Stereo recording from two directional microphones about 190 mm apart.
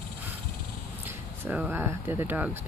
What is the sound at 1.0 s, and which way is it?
Speech, 10° right (ahead or behind).